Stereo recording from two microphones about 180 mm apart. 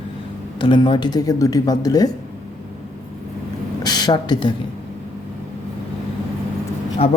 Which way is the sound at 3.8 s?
25° left (ahead or behind).